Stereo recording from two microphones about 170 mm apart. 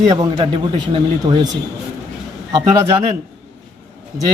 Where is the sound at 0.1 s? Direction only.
25° right (ahead or behind).